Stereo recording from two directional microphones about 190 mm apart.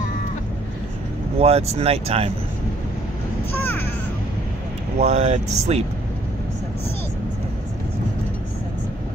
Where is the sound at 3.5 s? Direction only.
10° left (ahead or behind).